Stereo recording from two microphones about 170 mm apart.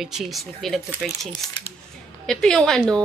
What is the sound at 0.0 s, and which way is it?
Speech, centre (ahead or behind).